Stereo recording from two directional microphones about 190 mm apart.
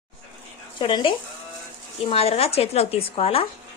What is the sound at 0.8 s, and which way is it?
Speech, 25° left (ahead or behind).